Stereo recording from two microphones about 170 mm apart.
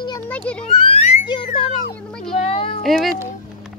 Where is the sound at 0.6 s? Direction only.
35° left (ahead or behind).